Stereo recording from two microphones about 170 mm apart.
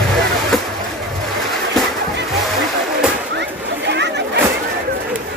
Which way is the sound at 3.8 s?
90° right.